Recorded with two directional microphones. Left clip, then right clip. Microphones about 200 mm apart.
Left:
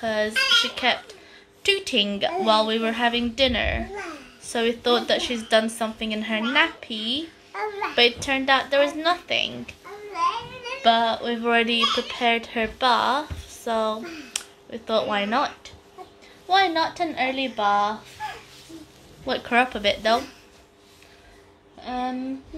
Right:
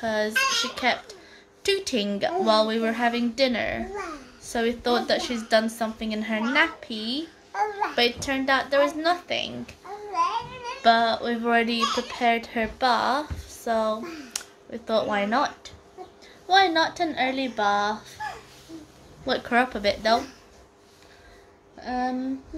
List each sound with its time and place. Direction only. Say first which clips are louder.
0.0 s speech: left 1 dB; 5° right (ahead or behind)
7.5 s a sound: right 3 dB; 25° right (ahead or behind)
7.9 s speech: left 4 dB; 10° left (ahead or behind)
10.8 s a woman's voice: even; 5° right (ahead or behind)
19.2 s speech: left 2 dB; 5° right (ahead or behind)
21.8 s a woman's voice: right 1 dB; 5° right (ahead or behind)